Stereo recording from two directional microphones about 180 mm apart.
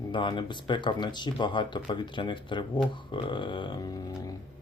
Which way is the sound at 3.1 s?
25° left (ahead or behind).